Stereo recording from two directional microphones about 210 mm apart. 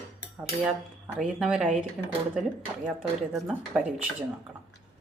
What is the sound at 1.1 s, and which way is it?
Speech, centre (ahead or behind).